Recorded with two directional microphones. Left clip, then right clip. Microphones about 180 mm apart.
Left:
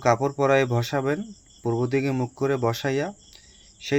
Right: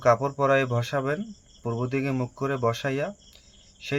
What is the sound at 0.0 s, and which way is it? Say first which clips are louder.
Speech: even; 20° left (ahead or behind).